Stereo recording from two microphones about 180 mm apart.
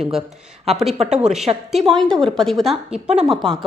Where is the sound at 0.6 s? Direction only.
Centre (ahead or behind).